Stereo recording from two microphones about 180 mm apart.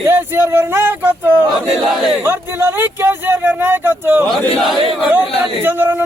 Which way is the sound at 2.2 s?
15° right (ahead or behind).